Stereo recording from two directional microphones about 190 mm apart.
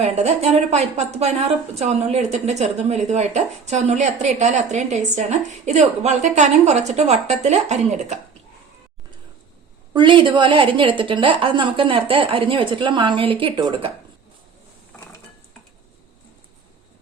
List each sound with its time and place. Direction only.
0.0 s a woman's voice: 35° right (ahead or behind)
9.9 s a woman's voice: 25° right (ahead or behind)